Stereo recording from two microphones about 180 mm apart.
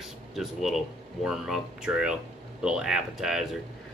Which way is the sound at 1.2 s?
5° right (ahead or behind).